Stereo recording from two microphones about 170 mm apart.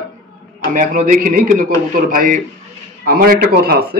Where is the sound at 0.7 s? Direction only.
55° right (ahead or behind).